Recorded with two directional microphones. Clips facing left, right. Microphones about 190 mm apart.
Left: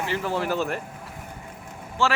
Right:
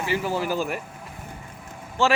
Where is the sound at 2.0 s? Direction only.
15° right (ahead or behind).